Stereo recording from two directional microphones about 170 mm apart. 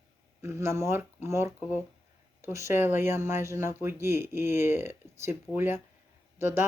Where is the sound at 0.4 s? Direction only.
15° right (ahead or behind).